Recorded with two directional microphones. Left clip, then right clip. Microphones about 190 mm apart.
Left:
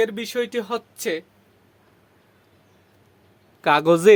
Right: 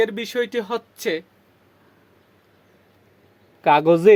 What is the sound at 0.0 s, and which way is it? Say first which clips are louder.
Speech: right 1 dB; 20° right (ahead or behind).